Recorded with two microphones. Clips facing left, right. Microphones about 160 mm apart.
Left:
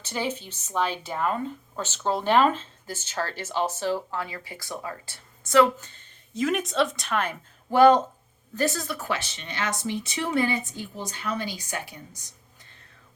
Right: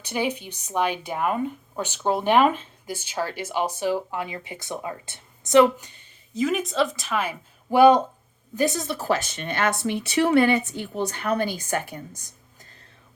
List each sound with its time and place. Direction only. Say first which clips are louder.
0.0 s speech: right 3 dB; 15° right (ahead or behind)
6.3 s a woman's voice: right 1 dB; centre (ahead or behind); by 9.0 s 20° right (ahead or behind)
9.0 s a woman's voice: right 6 dB; 40° right (ahead or behind)